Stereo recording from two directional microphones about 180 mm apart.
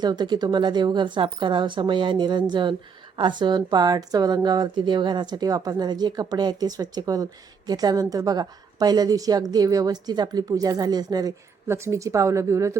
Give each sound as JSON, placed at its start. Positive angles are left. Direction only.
{"t": 0.0, "sound": "a woman's voice", "side_deg": -25}